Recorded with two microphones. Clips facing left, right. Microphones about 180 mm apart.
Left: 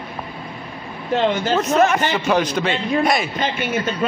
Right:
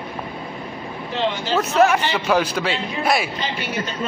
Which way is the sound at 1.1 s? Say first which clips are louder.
Left 5 dB; 50° left (ahead or behind).